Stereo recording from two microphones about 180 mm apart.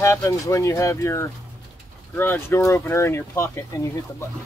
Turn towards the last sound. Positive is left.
turn(degrees=15)  # may be behind; listen again after turning